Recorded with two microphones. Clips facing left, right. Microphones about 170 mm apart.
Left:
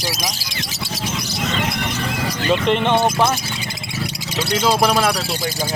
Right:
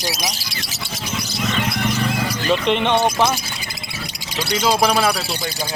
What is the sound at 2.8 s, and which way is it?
Speech, 5° left (ahead or behind).